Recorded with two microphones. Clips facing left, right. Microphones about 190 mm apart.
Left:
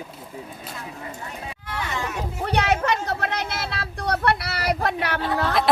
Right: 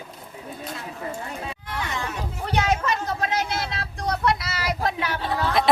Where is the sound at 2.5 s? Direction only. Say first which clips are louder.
Left 1 dB; 65° left (ahead or behind).